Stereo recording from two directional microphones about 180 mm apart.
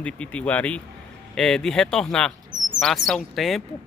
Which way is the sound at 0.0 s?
5° left (ahead or behind).